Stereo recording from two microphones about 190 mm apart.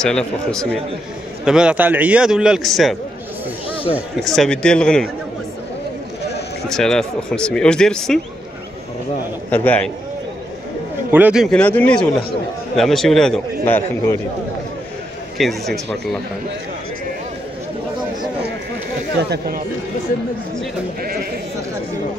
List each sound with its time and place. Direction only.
0.0 s a man's voice: 5° left (ahead or behind)
6.7 s a man's voice: 5° left (ahead or behind)
9.5 s a man's voice: 10° left (ahead or behind)
11.1 s a man's voice: 10° right (ahead or behind); by 14.1 s 10° left (ahead or behind)
15.3 s a man's voice: centre (ahead or behind)
19.3 s speech: 55° right (ahead or behind)
21.0 s speech: 50° right (ahead or behind)